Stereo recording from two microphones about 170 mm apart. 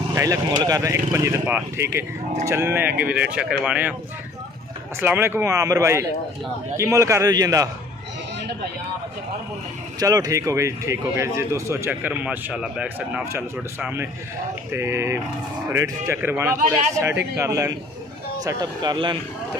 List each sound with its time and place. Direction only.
0.1 s speech: 20° right (ahead or behind)
5.0 s speech: 15° right (ahead or behind)
9.9 s speech: 20° right (ahead or behind)